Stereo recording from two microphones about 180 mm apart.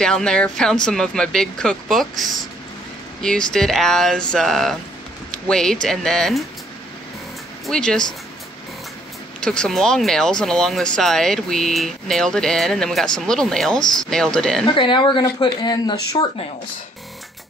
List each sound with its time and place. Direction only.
0.0 s speech: 5° left (ahead or behind)
7.6 s speech: 5° left (ahead or behind)
9.4 s speech: 5° left (ahead or behind)
14.8 s speech: 25° left (ahead or behind)